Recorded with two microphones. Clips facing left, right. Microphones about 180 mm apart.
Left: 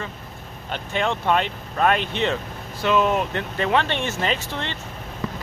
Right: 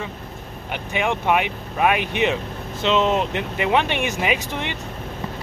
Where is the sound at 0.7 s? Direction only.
15° right (ahead or behind).